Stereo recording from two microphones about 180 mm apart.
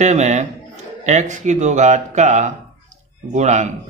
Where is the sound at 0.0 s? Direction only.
40° right (ahead or behind).